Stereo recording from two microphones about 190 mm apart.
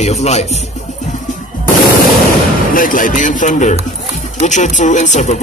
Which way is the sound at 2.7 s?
45° left (ahead or behind).